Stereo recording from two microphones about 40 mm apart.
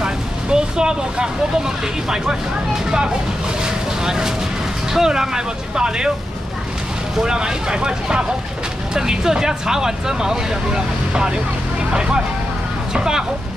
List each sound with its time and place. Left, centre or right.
0.0 s vehicle: centre
3.6 s vehicle: centre
4.9 s speech: centre
7.2 s speech: centre
12.9 s speech: centre